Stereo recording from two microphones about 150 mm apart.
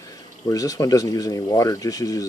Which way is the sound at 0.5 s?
25° left (ahead or behind).